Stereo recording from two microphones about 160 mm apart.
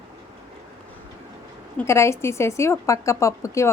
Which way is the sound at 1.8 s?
15° left (ahead or behind).